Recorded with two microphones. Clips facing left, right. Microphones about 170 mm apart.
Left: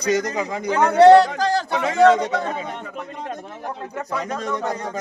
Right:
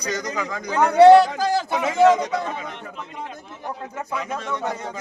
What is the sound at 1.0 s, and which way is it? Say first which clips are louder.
Speech: even; 10° right (ahead or behind).